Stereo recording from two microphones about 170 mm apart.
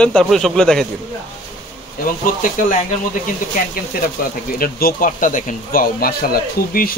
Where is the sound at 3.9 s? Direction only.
65° left (ahead or behind).